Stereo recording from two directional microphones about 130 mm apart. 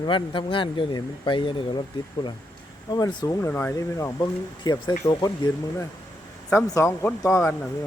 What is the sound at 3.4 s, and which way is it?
Speech, 20° left (ahead or behind).